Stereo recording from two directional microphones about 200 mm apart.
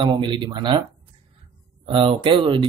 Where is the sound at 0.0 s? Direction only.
25° right (ahead or behind).